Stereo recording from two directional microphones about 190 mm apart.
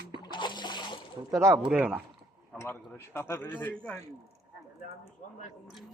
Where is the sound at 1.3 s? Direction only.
15° right (ahead or behind).